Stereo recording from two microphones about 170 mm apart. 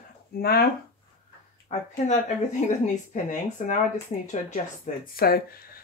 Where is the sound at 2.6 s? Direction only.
45° left (ahead or behind).